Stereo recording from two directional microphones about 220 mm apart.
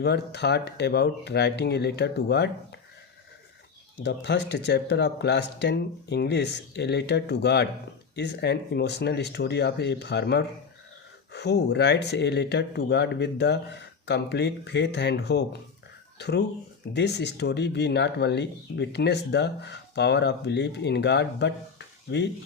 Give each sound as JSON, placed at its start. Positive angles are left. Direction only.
{"t": 0.0, "sound": "speech", "side_deg": 50}
{"t": 4.0, "sound": "speech", "side_deg": 50}